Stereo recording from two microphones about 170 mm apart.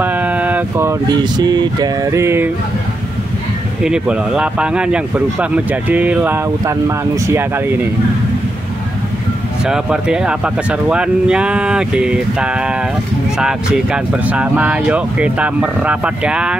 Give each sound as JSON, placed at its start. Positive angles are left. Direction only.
{"t": 0.0, "sound": "speech", "side_deg": -10}
{"t": 3.8, "sound": "speech", "side_deg": -5}
{"t": 9.7, "sound": "speech", "side_deg": -5}